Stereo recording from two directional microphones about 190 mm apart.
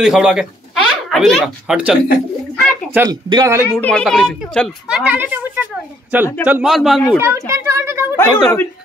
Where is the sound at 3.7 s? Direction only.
5° left (ahead or behind).